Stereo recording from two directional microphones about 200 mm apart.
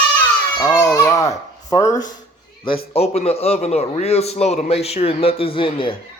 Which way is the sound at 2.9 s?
30° left (ahead or behind).